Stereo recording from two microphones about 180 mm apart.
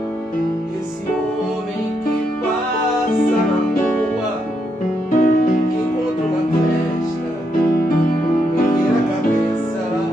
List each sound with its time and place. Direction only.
5.1 s music: 50° left (ahead or behind)